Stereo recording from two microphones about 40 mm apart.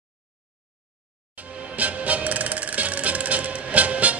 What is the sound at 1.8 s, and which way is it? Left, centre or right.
Music, right.